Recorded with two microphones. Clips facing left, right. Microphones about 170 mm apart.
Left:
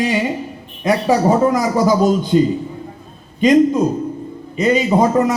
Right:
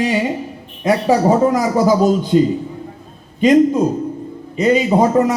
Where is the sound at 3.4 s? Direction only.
30° right (ahead or behind).